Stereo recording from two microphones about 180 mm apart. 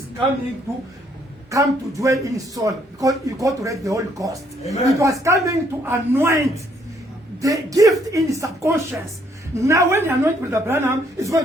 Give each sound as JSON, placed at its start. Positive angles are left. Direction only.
{"t": 1.5, "sound": "speech", "side_deg": -20}
{"t": 4.6, "sound": "speech", "side_deg": 40}
{"t": 4.9, "sound": "speech", "side_deg": -15}
{"t": 7.4, "sound": "speech", "side_deg": -20}